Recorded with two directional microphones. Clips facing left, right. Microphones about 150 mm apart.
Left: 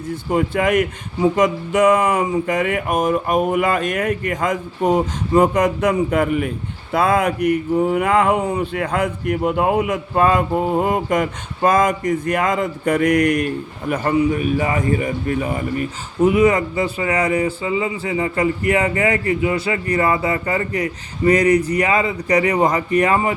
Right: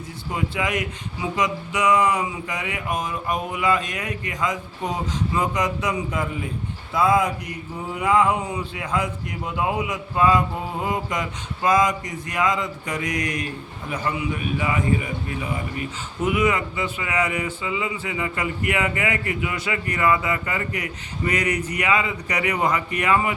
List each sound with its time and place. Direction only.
0.1 s speech: 50° left (ahead or behind)
16.2 s speech: 35° left (ahead or behind)